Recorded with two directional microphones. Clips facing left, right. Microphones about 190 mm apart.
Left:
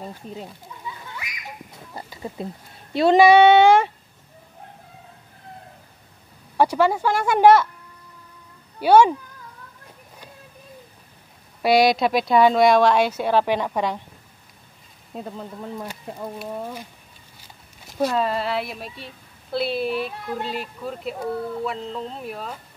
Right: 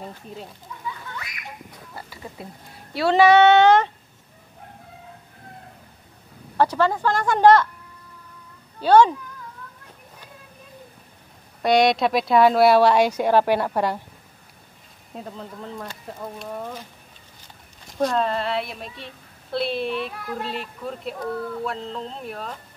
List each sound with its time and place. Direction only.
1.1 s a sound: 10° left (ahead or behind)
2.0 s speech: 20° left (ahead or behind)
6.5 s speech: 10° left (ahead or behind)
8.8 s speech: 10° left (ahead or behind)
11.6 s a woman's voice: 5° left (ahead or behind)
15.1 s speech: 5° left (ahead or behind)
17.8 s a woman's voice: 5° left (ahead or behind)